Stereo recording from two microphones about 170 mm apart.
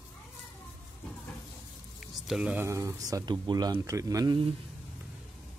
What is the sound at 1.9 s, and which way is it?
Speech, 5° right (ahead or behind).